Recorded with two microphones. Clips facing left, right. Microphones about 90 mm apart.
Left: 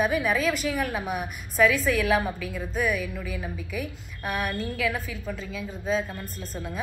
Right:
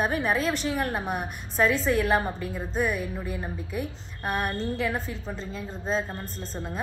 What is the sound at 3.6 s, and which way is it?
Speech, 65° left (ahead or behind).